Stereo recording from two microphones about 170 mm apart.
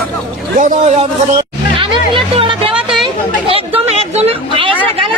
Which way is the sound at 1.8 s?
30° right (ahead or behind).